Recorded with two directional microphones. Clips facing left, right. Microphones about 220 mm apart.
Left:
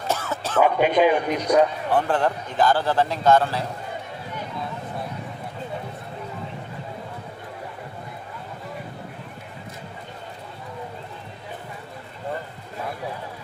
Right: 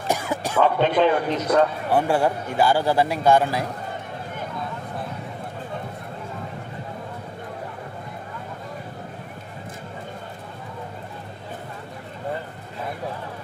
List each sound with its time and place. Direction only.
0.1 s music: 15° right (ahead or behind)
0.6 s a man's voice: 10° left (ahead or behind)
1.9 s a man's voice: 10° right (ahead or behind)